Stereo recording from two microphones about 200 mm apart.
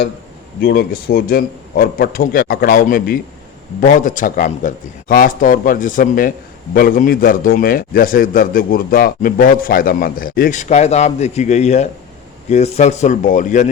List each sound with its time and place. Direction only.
0.6 s a man's voice: 50° left (ahead or behind)